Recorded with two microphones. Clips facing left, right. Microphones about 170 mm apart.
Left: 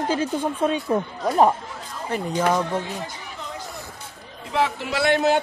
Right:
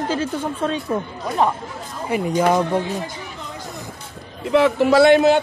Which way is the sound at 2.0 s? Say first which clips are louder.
Right 4 dB; 10° right (ahead or behind).